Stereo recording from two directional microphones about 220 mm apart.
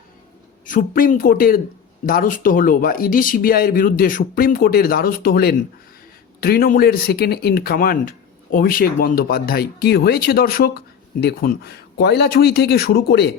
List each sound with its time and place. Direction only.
0.6 s speech: 40° left (ahead or behind)